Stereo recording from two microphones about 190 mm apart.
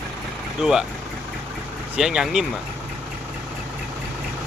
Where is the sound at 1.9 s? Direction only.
5° right (ahead or behind).